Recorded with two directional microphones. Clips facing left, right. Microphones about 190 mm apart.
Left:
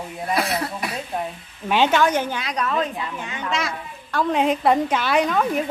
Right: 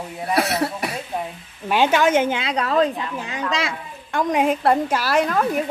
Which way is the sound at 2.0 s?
20° right (ahead or behind).